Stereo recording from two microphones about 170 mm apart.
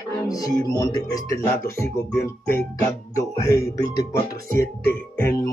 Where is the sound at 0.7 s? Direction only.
20° left (ahead or behind).